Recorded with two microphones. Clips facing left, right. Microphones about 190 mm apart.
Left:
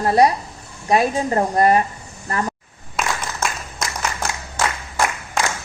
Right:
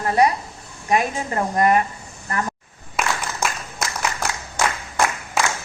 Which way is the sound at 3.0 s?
5° right (ahead or behind).